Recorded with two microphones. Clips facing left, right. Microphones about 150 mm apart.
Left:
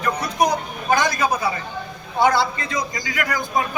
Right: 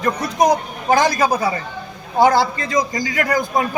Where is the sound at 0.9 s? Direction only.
35° right (ahead or behind).